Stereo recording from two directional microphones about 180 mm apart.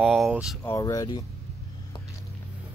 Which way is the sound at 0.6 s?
15° left (ahead or behind).